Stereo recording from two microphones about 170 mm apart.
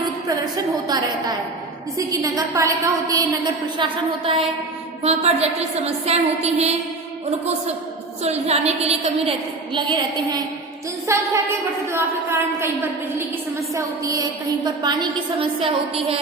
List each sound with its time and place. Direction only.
0.5 s a woman's voice: 20° right (ahead or behind)
3.8 s a woman's voice: 30° right (ahead or behind)
8.2 s a woman's voice: 40° right (ahead or behind)
9.7 s a woman's voice: 25° right (ahead or behind)